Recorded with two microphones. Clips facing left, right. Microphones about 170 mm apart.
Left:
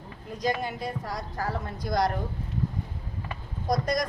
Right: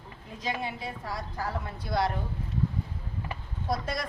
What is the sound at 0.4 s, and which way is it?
Speech, 40° left (ahead or behind).